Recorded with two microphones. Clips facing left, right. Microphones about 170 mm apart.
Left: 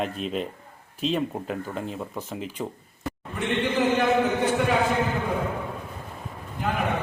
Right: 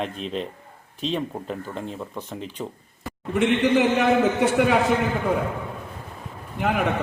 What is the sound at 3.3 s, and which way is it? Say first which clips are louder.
A man's voice: right 6 dB; 80° right.